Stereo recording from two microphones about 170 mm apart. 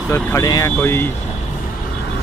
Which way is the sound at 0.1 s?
20° left (ahead or behind).